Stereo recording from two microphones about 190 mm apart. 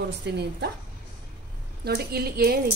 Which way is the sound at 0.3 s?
60° right (ahead or behind).